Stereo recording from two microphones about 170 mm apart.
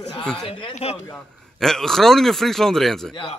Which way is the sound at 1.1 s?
5° left (ahead or behind).